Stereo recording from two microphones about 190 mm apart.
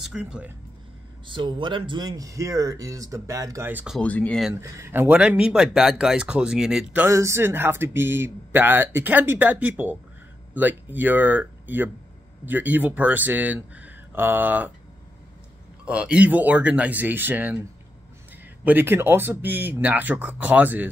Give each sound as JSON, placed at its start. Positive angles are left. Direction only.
{"t": 0.0, "sound": "speech", "side_deg": -5}
{"t": 1.2, "sound": "speech", "side_deg": -25}
{"t": 4.0, "sound": "speech", "side_deg": 5}
{"t": 4.6, "sound": "speech", "side_deg": -15}
{"t": 15.8, "sound": "speech", "side_deg": -5}
{"t": 18.6, "sound": "speech", "side_deg": -10}